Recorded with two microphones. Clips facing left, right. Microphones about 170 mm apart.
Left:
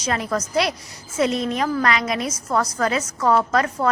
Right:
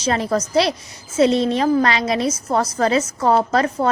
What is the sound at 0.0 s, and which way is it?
A woman's voice, 30° right (ahead or behind).